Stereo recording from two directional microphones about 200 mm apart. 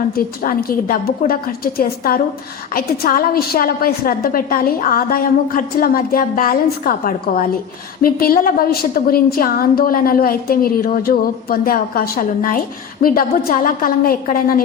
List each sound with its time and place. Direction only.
0.4 s a woman's voice: 45° left (ahead or behind)